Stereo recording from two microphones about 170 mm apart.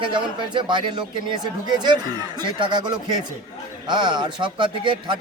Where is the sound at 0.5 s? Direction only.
25° right (ahead or behind).